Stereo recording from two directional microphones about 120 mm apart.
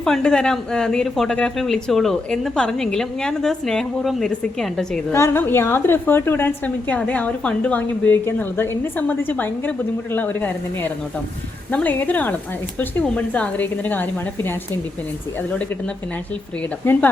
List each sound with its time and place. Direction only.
0.0 s speech: 5° left (ahead or behind)
5.1 s a woman's voice: 20° left (ahead or behind)
16.8 s a woman's voice: 20° left (ahead or behind)